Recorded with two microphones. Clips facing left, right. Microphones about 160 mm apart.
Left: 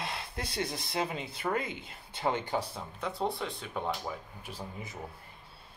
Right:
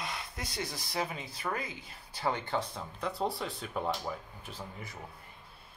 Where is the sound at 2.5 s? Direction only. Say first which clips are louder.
Left 1 dB; 5° left (ahead or behind).